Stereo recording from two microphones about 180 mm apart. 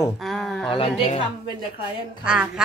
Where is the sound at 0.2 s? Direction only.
Centre (ahead or behind).